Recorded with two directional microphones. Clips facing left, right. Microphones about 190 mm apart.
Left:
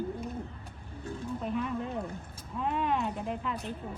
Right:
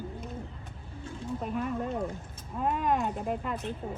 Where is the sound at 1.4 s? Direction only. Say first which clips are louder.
Right 1 dB; 45° right (ahead or behind).